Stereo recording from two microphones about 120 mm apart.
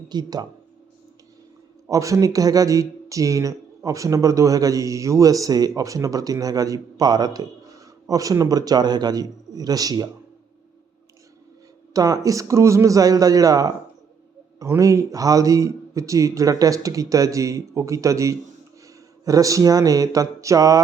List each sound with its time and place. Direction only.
0.1 s speech: 35° right (ahead or behind)
1.9 s speech: 25° right (ahead or behind)
11.9 s speech: 30° right (ahead or behind)